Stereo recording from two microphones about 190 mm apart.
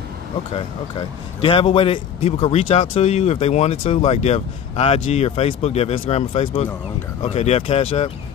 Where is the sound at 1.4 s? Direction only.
30° left (ahead or behind).